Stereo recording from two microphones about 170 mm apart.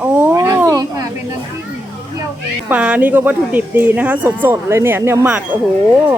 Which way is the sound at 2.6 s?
10° right (ahead or behind).